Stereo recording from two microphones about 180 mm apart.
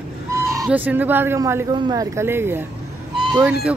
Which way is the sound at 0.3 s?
15° right (ahead or behind).